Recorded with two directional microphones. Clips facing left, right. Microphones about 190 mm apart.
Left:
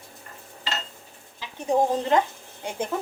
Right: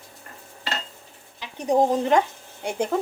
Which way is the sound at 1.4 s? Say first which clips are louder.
Right 2 dB; 15° right (ahead or behind).